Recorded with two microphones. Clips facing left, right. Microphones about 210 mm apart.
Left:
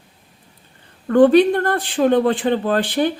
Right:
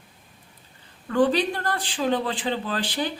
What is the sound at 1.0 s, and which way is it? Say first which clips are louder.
Speech: left 10 dB; 55° left (ahead or behind).